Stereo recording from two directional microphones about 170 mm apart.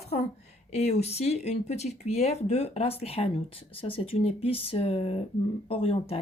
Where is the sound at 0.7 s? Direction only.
40° left (ahead or behind).